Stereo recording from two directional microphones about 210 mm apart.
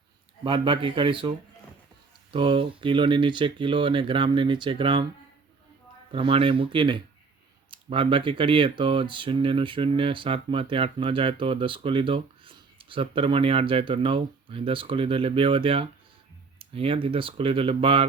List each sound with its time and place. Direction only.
0.4 s speech: 25° right (ahead or behind)
6.1 s speech: 25° right (ahead or behind)